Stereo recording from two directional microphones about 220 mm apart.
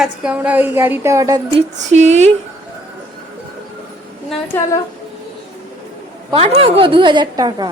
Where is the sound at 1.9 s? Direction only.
30° right (ahead or behind).